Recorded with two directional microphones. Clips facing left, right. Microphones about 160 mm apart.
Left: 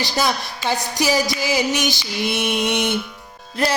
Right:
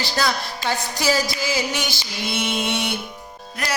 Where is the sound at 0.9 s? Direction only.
15° left (ahead or behind).